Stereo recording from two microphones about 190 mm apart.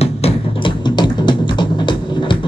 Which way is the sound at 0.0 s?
30° left (ahead or behind).